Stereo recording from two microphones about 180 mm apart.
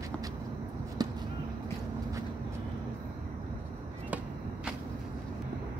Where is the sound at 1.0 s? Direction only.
20° right (ahead or behind).